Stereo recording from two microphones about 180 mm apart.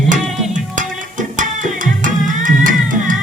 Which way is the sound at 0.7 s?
45° right (ahead or behind).